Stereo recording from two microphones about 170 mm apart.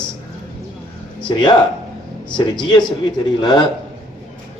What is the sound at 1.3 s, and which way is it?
Speech, 25° left (ahead or behind).